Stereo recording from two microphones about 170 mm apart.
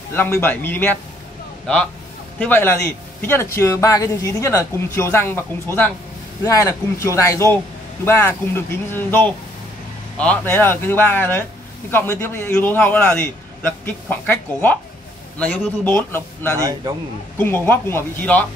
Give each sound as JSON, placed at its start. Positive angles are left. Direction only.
{"t": 0.1, "sound": "a man's voice", "side_deg": 15}
{"t": 2.3, "sound": "a man's voice", "side_deg": 10}
{"t": 16.5, "sound": "a man's voice", "side_deg": -20}
{"t": 17.4, "sound": "a man's voice", "side_deg": 15}